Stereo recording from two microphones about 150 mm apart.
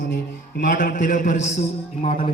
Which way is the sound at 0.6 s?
75° left (ahead or behind).